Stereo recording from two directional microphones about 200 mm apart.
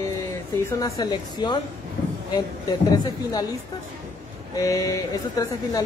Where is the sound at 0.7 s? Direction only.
15° left (ahead or behind).